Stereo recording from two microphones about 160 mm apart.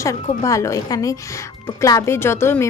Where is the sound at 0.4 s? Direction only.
20° left (ahead or behind).